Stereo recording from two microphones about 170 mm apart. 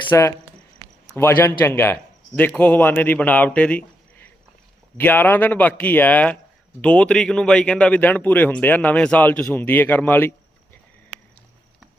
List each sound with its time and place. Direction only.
0.1 s a man's voice: 15° left (ahead or behind)